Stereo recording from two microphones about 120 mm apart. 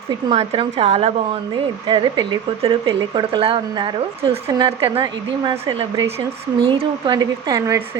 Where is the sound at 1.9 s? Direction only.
45° right (ahead or behind).